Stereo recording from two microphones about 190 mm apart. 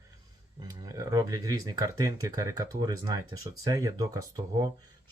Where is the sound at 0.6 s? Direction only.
20° right (ahead or behind).